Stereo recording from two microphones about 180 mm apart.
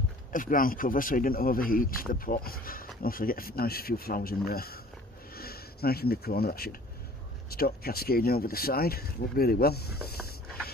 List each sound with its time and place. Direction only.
0.3 s speech: 50° left (ahead or behind)